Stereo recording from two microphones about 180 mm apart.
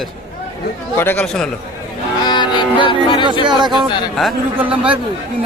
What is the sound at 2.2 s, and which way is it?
Music, 25° left (ahead or behind).